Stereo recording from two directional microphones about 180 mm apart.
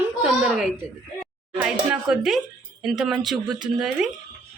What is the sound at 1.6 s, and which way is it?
Speech, 5° right (ahead or behind).